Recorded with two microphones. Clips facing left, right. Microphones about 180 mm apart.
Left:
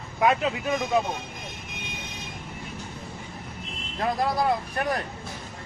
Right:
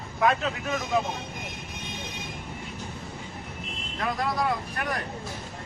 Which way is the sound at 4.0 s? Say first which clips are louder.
Left 3 dB; 30° left (ahead or behind).